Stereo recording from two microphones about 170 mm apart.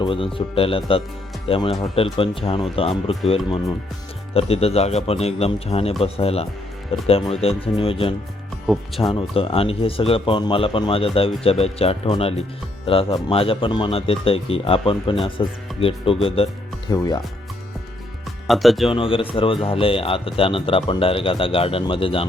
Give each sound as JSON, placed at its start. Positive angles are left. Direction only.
{"t": 0.0, "sound": "speech", "side_deg": 30}
{"t": 16.9, "sound": "speech", "side_deg": 20}
{"t": 18.4, "sound": "speech", "side_deg": 0}
{"t": 18.9, "sound": "speech", "side_deg": 30}